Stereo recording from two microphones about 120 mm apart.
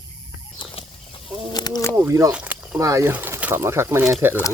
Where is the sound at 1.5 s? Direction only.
35° left (ahead or behind).